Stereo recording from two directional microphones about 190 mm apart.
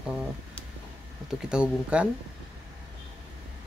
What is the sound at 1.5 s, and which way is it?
Speech, 5° right (ahead or behind).